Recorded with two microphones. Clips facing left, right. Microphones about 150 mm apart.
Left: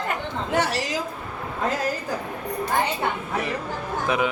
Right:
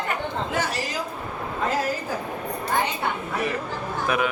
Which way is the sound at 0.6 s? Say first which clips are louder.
Left 6 dB; 75° left (ahead or behind).